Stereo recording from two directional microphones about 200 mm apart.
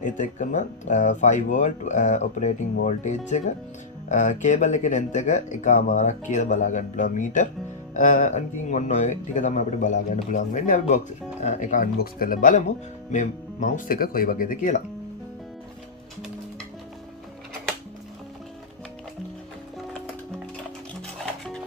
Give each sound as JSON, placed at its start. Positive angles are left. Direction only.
{"t": 0.0, "sound": "speech", "side_deg": 40}